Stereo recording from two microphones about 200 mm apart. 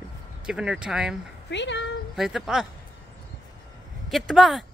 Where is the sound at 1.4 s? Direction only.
60° left (ahead or behind).